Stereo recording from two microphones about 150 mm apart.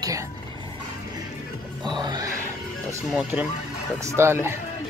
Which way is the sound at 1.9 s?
30° right (ahead or behind).